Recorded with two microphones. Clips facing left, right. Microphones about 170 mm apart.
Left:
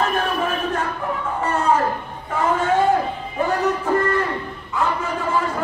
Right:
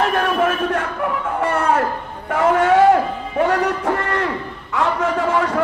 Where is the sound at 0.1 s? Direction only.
75° right (ahead or behind).